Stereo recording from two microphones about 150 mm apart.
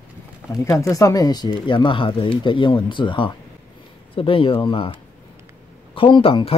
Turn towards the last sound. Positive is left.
turn(degrees=40)  # may be behind; listen again after turning